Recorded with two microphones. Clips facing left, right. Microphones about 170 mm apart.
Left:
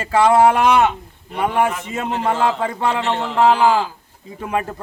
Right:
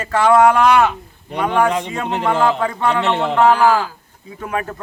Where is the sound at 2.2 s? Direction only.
65° right (ahead or behind).